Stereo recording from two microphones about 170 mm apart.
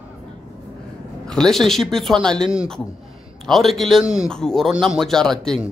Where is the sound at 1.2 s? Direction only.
5° left (ahead or behind).